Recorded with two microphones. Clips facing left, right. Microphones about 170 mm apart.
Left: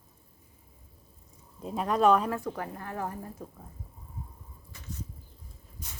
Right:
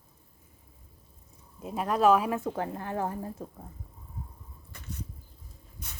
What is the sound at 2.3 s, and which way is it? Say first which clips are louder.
A woman's voice: right 3 dB; 25° right (ahead or behind).